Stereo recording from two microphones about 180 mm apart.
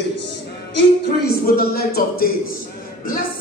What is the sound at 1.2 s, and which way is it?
A man's voice, 60° left (ahead or behind).